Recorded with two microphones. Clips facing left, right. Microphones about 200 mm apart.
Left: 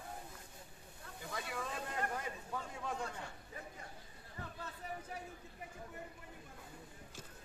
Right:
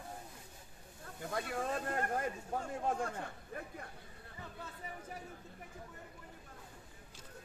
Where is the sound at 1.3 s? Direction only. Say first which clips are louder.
Right 6 dB; 55° right (ahead or behind).